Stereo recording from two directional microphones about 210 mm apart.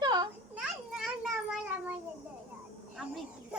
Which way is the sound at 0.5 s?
5° right (ahead or behind).